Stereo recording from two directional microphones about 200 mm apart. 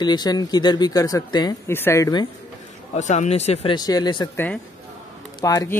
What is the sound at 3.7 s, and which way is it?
Speech, 20° left (ahead or behind).